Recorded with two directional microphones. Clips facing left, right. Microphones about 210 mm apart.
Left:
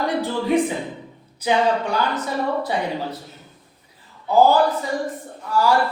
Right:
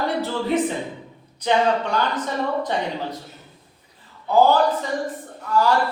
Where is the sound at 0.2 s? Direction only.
10° left (ahead or behind).